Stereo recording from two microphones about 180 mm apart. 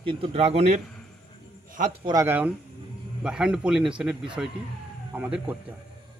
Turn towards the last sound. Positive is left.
turn(degrees=-10)  # may be behind; listen again after turning